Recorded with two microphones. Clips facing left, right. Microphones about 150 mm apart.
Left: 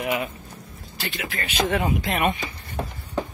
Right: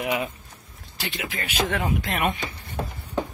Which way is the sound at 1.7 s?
5° left (ahead or behind).